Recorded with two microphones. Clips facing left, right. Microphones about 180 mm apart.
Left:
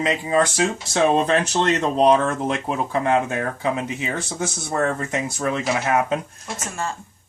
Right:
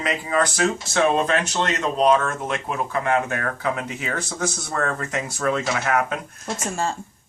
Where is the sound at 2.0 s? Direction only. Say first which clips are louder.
Left 1 dB; 30° left (ahead or behind).